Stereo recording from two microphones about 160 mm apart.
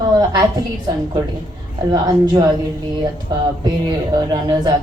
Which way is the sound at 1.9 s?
25° right (ahead or behind).